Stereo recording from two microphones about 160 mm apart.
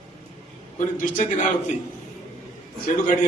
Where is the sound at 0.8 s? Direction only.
50° left (ahead or behind).